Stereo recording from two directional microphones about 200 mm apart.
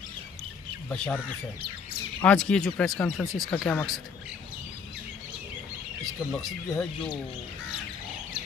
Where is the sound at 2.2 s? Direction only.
5° left (ahead or behind).